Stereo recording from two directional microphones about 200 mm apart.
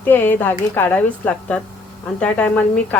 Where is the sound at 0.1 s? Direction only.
10° left (ahead or behind).